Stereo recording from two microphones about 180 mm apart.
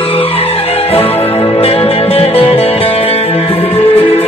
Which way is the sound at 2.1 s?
35° left (ahead or behind).